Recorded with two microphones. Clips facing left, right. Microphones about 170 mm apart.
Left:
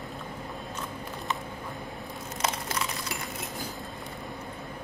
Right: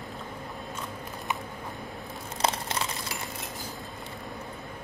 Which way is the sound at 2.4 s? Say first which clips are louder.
Right 3 dB; 30° right (ahead or behind).